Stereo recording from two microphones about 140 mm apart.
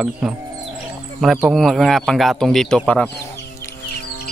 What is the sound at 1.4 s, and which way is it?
Speech, centre (ahead or behind).